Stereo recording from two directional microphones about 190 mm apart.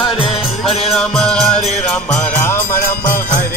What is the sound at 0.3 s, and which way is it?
Music, centre (ahead or behind).